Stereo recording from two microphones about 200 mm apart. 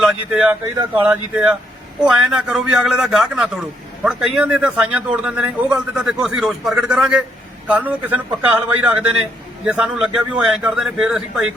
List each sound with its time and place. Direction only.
0.0 s a man's voice: 5° right (ahead or behind)